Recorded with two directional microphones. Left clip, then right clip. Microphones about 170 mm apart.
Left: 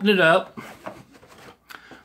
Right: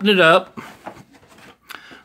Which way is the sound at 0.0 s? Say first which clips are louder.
Right 4 dB; 40° right (ahead or behind).